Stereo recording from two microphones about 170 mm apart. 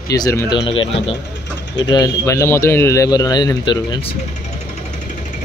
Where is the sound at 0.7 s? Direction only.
30° left (ahead or behind).